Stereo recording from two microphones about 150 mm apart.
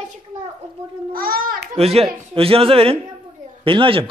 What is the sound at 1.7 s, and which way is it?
A man's voice, 40° right (ahead or behind).